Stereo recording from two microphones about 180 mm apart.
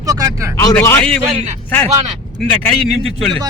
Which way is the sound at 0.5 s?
15° left (ahead or behind).